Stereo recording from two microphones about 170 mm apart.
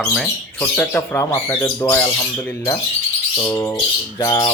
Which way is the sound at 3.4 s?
25° left (ahead or behind).